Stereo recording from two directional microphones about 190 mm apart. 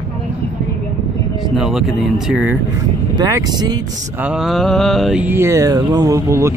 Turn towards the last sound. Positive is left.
turn(degrees=-15)  # may be behind; listen again after turning